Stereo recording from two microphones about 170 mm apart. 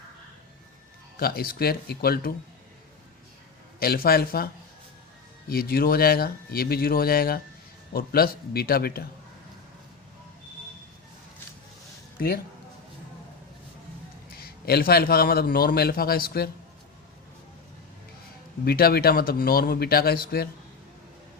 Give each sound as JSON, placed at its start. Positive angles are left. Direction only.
{"t": 1.1, "sound": "a man's voice", "side_deg": 60}
{"t": 3.8, "sound": "a man's voice", "side_deg": 60}
{"t": 5.5, "sound": "a man's voice", "side_deg": 60}
{"t": 14.3, "sound": "a man's voice", "side_deg": 65}
{"t": 18.6, "sound": "a man's voice", "side_deg": 65}